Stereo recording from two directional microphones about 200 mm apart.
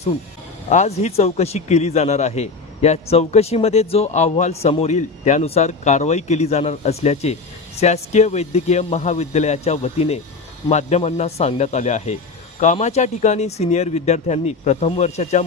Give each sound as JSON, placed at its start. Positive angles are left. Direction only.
{"t": 0.7, "sound": "a man's voice", "side_deg": 35}